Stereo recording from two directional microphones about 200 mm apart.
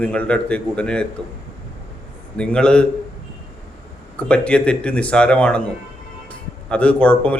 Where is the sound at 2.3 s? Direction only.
5° left (ahead or behind).